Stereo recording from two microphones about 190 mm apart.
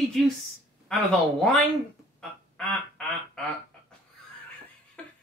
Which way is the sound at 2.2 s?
5° left (ahead or behind).